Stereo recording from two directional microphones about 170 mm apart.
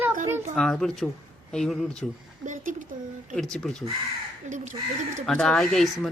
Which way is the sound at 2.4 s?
50° right (ahead or behind).